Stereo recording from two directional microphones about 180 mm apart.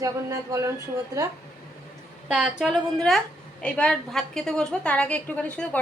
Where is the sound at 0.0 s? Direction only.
20° right (ahead or behind).